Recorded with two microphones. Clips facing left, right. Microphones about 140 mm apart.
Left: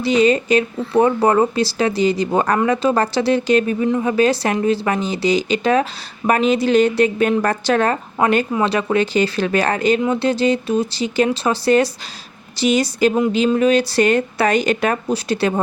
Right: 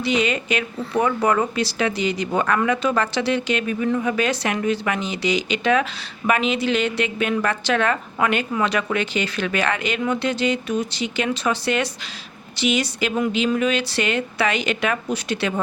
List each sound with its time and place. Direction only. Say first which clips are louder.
0.0 s speech: left 7 dB; 35° left (ahead or behind)